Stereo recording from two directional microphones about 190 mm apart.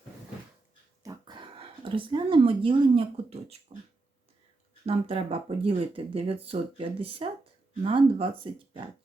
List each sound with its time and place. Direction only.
1.0 s a sound: 25° right (ahead or behind)
3.7 s speech: 30° right (ahead or behind)
4.9 s speech: 30° right (ahead or behind)